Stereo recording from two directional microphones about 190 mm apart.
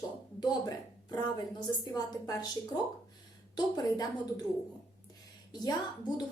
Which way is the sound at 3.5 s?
20° left (ahead or behind).